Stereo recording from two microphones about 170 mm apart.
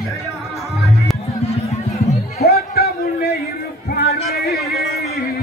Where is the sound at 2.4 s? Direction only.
70° left (ahead or behind).